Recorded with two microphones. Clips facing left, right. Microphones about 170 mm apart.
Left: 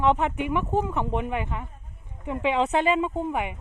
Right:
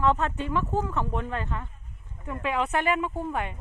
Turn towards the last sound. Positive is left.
turn(degrees=15)  # may be behind; listen again after turning